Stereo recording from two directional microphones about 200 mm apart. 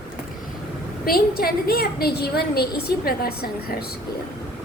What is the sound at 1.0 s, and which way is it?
A woman's voice, 50° left (ahead or behind).